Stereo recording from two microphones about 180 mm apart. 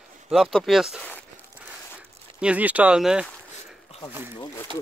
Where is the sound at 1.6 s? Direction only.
10° right (ahead or behind).